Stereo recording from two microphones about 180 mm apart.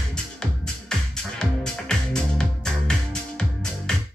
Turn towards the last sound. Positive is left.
turn(degrees=5)  # may be behind; listen again after turning